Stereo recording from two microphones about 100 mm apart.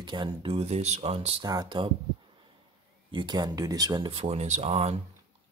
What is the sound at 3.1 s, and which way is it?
Speech, 45° right (ahead or behind).